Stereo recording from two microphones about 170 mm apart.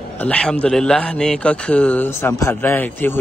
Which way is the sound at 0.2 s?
5° left (ahead or behind).